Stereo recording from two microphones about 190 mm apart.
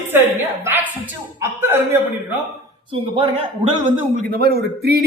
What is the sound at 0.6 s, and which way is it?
Speech, 10° right (ahead or behind).